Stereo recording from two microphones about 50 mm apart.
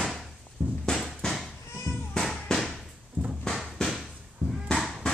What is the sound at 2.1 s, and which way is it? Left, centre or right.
Music, centre.